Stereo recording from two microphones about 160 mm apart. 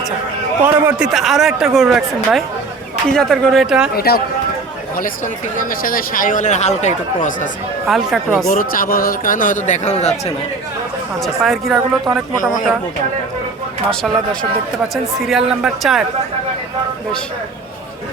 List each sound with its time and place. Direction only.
0.6 s a man's voice: 10° right (ahead or behind)
3.9 s speech: 80° left
4.9 s speech: 60° left (ahead or behind)
7.9 s a man's voice: centre (ahead or behind)
8.4 s a man's voice: 60° left (ahead or behind); by 10.3 s 40° left (ahead or behind)
11.2 s a man's voice: centre (ahead or behind)
15.3 s a man's voice: 5° right (ahead or behind)